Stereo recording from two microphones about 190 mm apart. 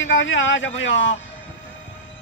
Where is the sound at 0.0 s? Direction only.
80° left.